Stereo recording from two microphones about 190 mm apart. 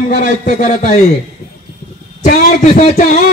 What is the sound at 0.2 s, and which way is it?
Speech, 45° left (ahead or behind).